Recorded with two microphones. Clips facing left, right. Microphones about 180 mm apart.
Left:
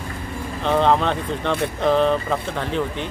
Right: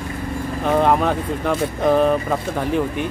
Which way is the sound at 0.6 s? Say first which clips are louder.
Right 1 dB; 10° right (ahead or behind).